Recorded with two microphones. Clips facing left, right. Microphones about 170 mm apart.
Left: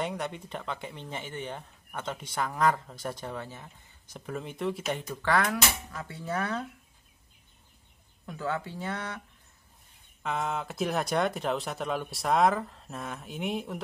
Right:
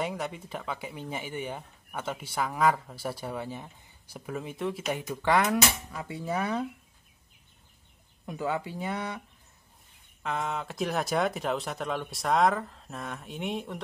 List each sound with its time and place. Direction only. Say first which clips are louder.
0.0 s speech: even; centre (ahead or behind)
4.3 s speech: even; centre (ahead or behind)
8.3 s speech: right 2 dB; 15° right (ahead or behind)
10.2 s speech: left 1 dB; centre (ahead or behind)